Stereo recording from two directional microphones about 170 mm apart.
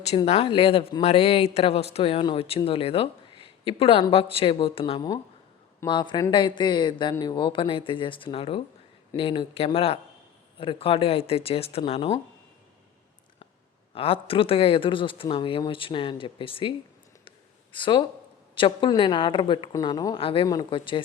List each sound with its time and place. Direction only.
0.3 s a woman's voice: 35° left (ahead or behind)
13.9 s speech: 35° left (ahead or behind)
17.2 s a sound: 30° left (ahead or behind)
18.5 s a woman's voice: 30° left (ahead or behind)